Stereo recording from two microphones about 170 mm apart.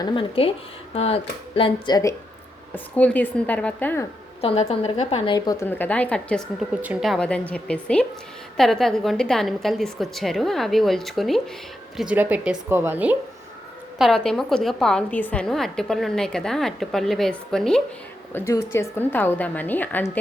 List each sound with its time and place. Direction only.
0.0 s a woman's voice: 30° left (ahead or behind)
2.7 s a woman's voice: 10° left (ahead or behind)
4.4 s a woman's voice: 35° left (ahead or behind)
5.5 s a woman's voice: 10° left (ahead or behind); by 13.1 s 10° right (ahead or behind)
14.0 s a woman's voice: centre (ahead or behind)
18.3 s a woman's voice: 15° left (ahead or behind)